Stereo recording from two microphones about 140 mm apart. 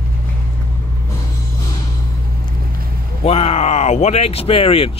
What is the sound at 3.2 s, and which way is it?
Speech, 50° left (ahead or behind).